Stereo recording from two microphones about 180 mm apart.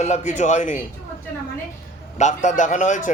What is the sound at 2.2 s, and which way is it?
Speech, 40° left (ahead or behind).